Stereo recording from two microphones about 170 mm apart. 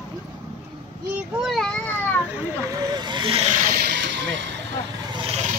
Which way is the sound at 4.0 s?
90° right.